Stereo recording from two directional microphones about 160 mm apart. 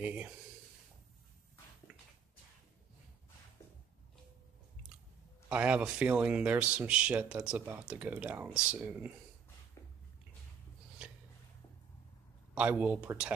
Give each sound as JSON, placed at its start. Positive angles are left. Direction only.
{"t": 0.0, "sound": "speech", "side_deg": -10}
{"t": 5.5, "sound": "speech", "side_deg": -10}
{"t": 9.8, "sound": "a sound", "side_deg": 20}
{"t": 12.5, "sound": "speech", "side_deg": -10}